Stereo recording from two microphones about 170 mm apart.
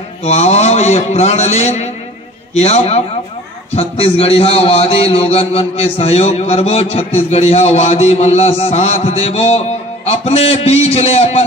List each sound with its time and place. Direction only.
0.2 s a man's voice: 40° left (ahead or behind)